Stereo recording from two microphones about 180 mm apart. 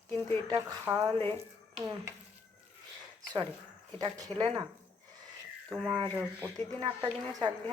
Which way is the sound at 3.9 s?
20° right (ahead or behind).